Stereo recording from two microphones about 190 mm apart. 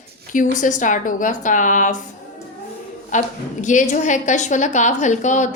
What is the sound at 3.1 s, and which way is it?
A woman's voice, 40° left (ahead or behind).